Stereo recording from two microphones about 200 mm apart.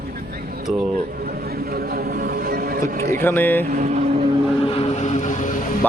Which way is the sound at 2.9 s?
45° right (ahead or behind).